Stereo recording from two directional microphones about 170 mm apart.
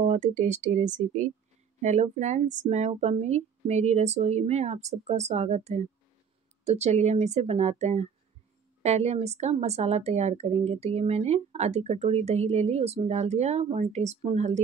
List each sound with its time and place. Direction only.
0.0 s a woman's voice: 40° right (ahead or behind)